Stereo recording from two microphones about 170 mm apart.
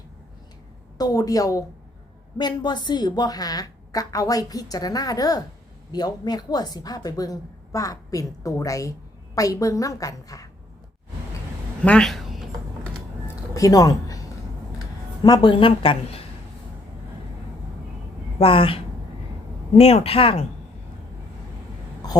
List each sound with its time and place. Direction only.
0.9 s a woman's voice: 20° left (ahead or behind)
11.9 s a woman's voice: 5° left (ahead or behind)
13.2 s a sound: 20° left (ahead or behind)
15.2 s a woman's voice: 25° left (ahead or behind)
18.3 s a woman's voice: 30° left (ahead or behind)